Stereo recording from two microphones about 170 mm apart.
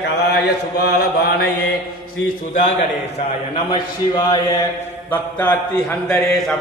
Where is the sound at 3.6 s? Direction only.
25° left (ahead or behind).